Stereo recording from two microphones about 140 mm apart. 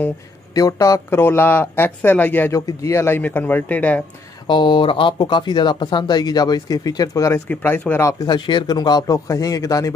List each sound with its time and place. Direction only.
0.6 s speech: 25° left (ahead or behind)
4.5 s speech: 35° left (ahead or behind)
7.4 s speech: 10° left (ahead or behind)